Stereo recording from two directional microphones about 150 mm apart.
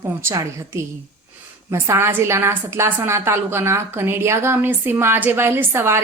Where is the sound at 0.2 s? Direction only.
15° right (ahead or behind).